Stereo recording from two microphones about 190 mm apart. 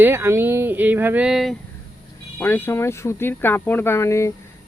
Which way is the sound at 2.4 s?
10° left (ahead or behind).